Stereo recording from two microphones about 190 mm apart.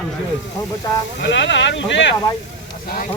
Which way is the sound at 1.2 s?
65° left (ahead or behind).